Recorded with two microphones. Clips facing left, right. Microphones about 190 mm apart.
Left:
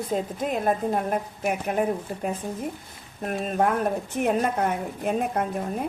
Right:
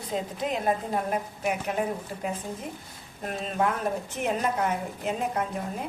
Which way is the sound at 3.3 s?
50° left (ahead or behind).